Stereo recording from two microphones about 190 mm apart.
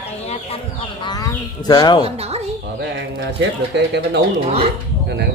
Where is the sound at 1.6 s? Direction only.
20° left (ahead or behind).